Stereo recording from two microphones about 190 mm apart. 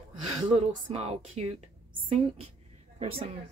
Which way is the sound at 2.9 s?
30° right (ahead or behind).